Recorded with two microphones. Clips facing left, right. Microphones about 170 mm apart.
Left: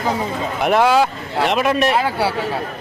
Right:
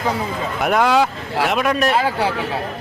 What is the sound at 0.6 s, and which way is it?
Speech, centre (ahead or behind).